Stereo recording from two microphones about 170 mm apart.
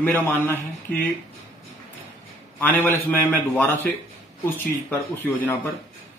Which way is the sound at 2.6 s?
10° left (ahead or behind).